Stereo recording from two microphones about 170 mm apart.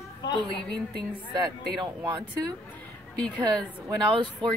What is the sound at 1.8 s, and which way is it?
Speech, 25° right (ahead or behind).